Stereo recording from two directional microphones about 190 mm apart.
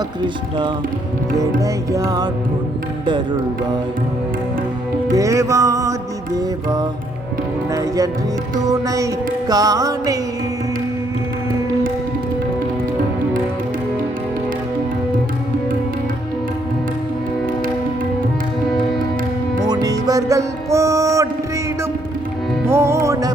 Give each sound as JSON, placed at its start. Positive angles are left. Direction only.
{"t": 1.4, "sound": "music", "side_deg": -15}
{"t": 5.1, "sound": "music", "side_deg": -15}
{"t": 7.7, "sound": "music", "side_deg": -20}
{"t": 19.6, "sound": "music", "side_deg": -20}
{"t": 22.6, "sound": "music", "side_deg": -10}